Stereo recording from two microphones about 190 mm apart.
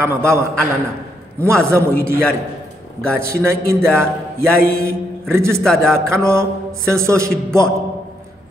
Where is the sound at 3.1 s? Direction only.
15° right (ahead or behind).